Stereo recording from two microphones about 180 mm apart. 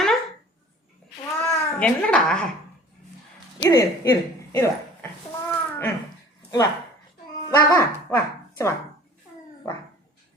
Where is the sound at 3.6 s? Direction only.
15° left (ahead or behind).